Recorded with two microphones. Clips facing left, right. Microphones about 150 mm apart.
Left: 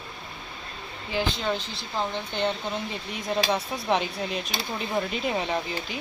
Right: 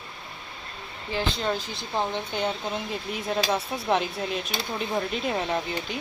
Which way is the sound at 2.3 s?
5° right (ahead or behind).